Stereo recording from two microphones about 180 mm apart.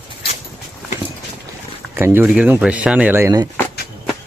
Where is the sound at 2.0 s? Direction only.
10° right (ahead or behind).